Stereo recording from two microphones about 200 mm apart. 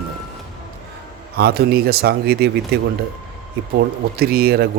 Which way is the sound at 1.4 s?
50° right (ahead or behind).